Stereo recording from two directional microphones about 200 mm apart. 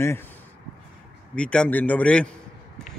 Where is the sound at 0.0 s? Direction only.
10° left (ahead or behind).